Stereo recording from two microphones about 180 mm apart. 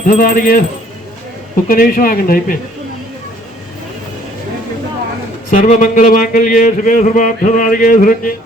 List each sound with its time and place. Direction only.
0.1 s a man's voice: 50° left (ahead or behind)
1.6 s a man's voice: 55° left (ahead or behind)
5.5 s a man's voice: 45° left (ahead or behind)